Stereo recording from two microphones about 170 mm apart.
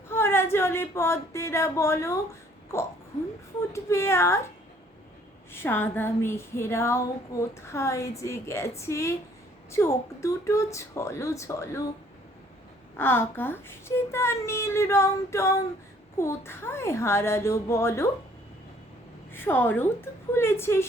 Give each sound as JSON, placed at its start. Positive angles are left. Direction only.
{"t": 0.1, "sound": "speech", "side_deg": 15}
{"t": 3.7, "sound": "speech", "side_deg": 15}
{"t": 5.5, "sound": "speech", "side_deg": 15}
{"t": 13.0, "sound": "speech", "side_deg": 15}
{"t": 19.3, "sound": "speech", "side_deg": 15}